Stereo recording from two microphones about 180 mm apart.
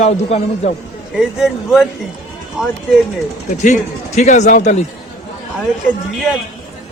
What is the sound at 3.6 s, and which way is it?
A man's voice, 40° left (ahead or behind).